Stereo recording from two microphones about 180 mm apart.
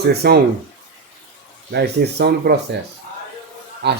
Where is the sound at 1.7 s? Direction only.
65° right (ahead or behind).